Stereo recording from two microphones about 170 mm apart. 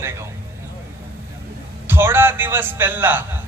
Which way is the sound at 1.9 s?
15° right (ahead or behind).